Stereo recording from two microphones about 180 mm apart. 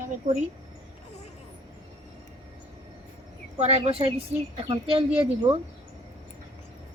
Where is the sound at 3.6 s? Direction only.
35° right (ahead or behind).